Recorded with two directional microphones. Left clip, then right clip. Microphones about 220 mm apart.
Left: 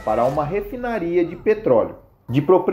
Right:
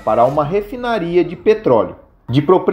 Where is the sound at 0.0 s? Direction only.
40° right (ahead or behind).